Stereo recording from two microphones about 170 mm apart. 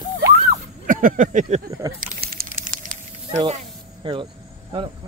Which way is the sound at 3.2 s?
40° right (ahead or behind).